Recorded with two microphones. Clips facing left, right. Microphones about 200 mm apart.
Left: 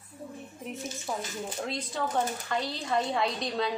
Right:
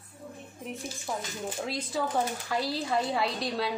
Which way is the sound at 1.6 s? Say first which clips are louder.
Right 2 dB; 5° right (ahead or behind).